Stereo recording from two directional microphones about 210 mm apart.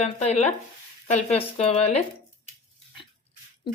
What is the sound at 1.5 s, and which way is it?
Speech, 30° left (ahead or behind).